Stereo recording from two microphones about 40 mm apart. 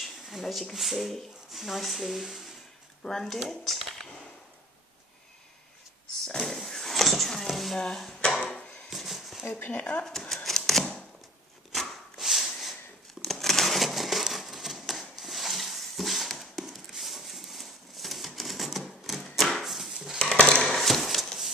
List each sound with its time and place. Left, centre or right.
0.0 s a sound: centre
0.7 s speech: centre
3.1 s speech: centre
6.2 s a sound: centre
7.7 s dishes: centre
8.9 s a sound: centre
9.4 s speech: left
9.7 s speech: left
10.0 s typewriter: centre
11.7 s a sound: centre
20.2 s dishes: left
20.6 s horse: centre